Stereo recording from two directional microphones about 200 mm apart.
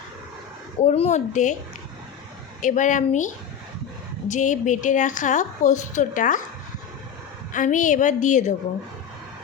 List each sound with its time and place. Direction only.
0.8 s a woman's voice: 35° left (ahead or behind)
2.6 s a woman's voice: 40° left (ahead or behind)
7.5 s a woman's voice: 40° left (ahead or behind)